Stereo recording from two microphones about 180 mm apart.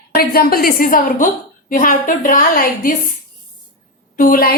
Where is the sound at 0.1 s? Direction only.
55° left (ahead or behind).